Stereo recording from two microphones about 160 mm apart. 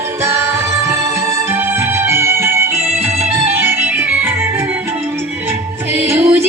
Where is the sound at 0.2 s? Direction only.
15° right (ahead or behind).